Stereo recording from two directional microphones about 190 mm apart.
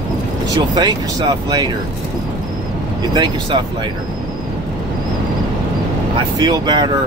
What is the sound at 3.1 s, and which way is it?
Speech, 25° right (ahead or behind).